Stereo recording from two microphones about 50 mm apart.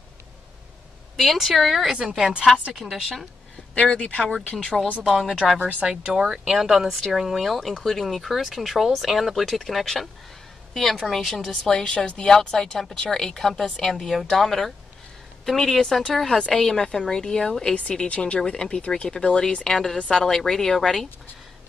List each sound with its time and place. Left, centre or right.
1.1 s speech: centre
2.0 s speech: centre
2.7 s speech: centre
3.7 s a woman's voice: left
5.6 s a woman's voice: right; by 17.7 s centre
17.7 s a woman's voice: left; by 21.1 s centre